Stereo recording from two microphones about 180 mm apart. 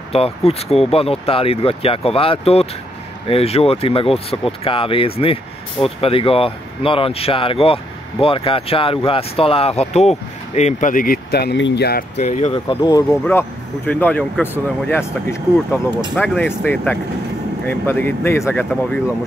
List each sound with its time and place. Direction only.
0.1 s speech: 35° left (ahead or behind); by 12.0 s 65° left (ahead or behind)
12.2 s speech: 40° left (ahead or behind)
12.6 s speech: 25° left (ahead or behind)
13.2 s speech: 10° left (ahead or behind)
16.2 s speech: 10° left (ahead or behind)